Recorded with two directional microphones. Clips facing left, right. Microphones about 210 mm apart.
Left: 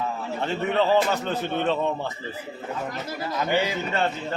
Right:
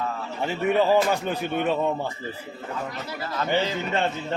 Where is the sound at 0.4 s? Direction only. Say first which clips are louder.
Right 2 dB; 10° right (ahead or behind).